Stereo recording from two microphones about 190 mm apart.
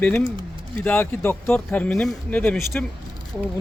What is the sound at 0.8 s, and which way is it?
Speech, 10° left (ahead or behind).